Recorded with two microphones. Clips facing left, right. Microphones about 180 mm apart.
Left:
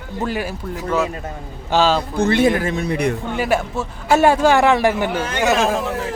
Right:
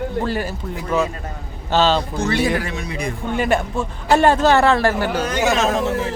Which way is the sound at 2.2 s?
55° left (ahead or behind).